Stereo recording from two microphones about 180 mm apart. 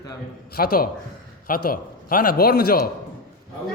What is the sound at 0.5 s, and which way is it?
A man's voice, 55° left (ahead or behind).